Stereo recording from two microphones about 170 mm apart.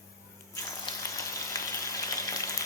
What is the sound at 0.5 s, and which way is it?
Water, 20° left (ahead or behind).